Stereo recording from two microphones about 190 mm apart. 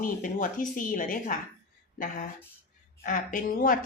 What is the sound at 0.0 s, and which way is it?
Speech, 45° left (ahead or behind).